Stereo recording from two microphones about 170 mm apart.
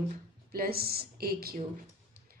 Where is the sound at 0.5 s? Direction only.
65° right (ahead or behind).